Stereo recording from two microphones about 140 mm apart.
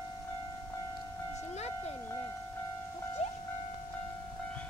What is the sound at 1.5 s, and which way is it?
Music, 50° left (ahead or behind).